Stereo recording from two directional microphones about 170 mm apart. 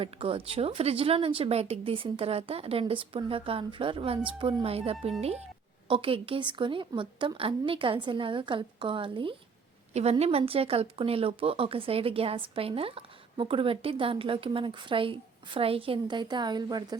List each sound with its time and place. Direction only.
0.0 s a woman's voice: 35° right (ahead or behind)